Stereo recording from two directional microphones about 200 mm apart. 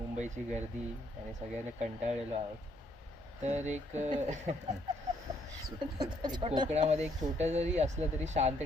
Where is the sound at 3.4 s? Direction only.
35° right (ahead or behind).